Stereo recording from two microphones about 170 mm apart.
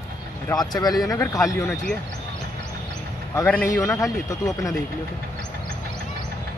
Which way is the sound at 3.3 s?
10° left (ahead or behind).